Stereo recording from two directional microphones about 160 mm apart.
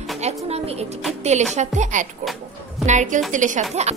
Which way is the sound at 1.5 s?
50° right (ahead or behind).